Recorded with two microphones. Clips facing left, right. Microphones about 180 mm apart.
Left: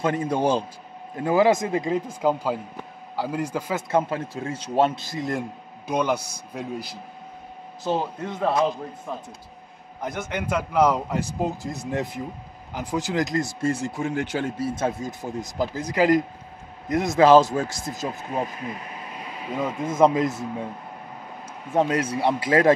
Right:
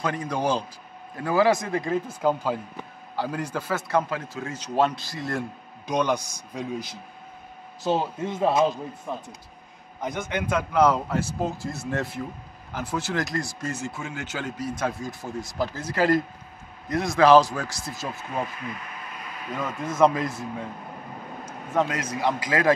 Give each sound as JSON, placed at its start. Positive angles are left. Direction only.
{"t": 0.0, "sound": "speech", "side_deg": 25}
{"t": 5.9, "sound": "a man's voice", "side_deg": 10}
{"t": 7.8, "sound": "a man's voice", "side_deg": 0}
{"t": 18.3, "sound": "speech", "side_deg": 30}
{"t": 21.5, "sound": "speech", "side_deg": 30}